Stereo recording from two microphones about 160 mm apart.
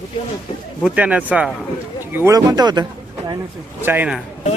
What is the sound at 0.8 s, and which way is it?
Speech, 5° right (ahead or behind).